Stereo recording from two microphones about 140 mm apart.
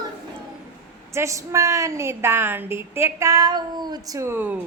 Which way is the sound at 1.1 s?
20° right (ahead or behind).